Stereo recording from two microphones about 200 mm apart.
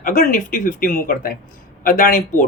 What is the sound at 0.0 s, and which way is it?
A man's voice, 40° left (ahead or behind).